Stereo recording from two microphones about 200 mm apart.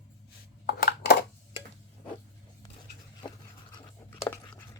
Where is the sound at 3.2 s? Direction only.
20° left (ahead or behind).